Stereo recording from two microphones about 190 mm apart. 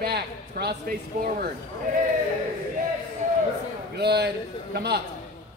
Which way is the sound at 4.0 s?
60° right (ahead or behind).